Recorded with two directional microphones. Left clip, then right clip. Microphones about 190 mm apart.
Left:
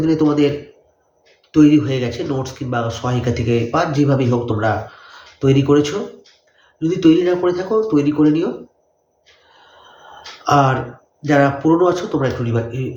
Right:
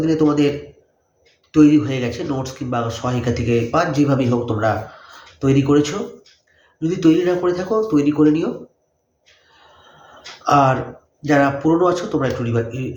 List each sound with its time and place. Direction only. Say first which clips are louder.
0.0 s speech: left 1 dB; 10° right (ahead or behind)
1.5 s speech: left 1 dB; 5° right (ahead or behind)
10.4 s speech: even; 5° right (ahead or behind)